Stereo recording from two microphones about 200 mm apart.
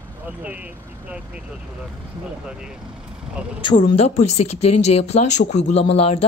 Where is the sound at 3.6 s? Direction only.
25° left (ahead or behind).